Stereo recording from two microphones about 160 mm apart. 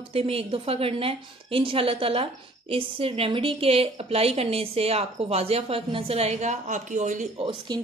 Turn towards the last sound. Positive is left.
turn(degrees=-25)  # may be behind; listen again after turning